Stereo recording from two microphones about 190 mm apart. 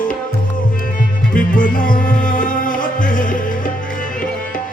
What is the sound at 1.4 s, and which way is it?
Music, 45° left (ahead or behind).